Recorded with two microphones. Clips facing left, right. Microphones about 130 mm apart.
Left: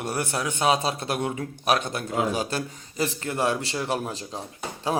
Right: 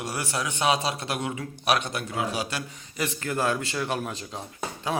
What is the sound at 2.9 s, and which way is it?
A man's voice, 30° left (ahead or behind).